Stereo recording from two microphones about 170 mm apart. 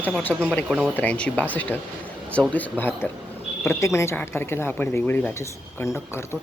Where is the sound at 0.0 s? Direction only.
10° left (ahead or behind).